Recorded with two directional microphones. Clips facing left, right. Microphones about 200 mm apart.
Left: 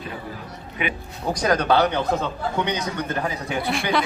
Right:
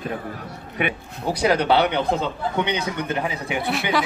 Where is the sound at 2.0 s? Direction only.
30° right (ahead or behind).